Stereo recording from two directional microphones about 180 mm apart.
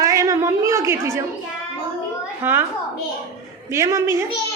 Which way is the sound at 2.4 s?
10° right (ahead or behind).